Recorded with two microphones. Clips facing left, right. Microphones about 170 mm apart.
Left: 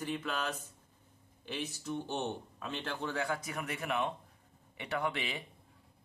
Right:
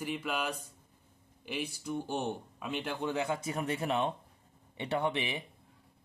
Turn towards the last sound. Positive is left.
turn(degrees=-20)  # may be behind; listen again after turning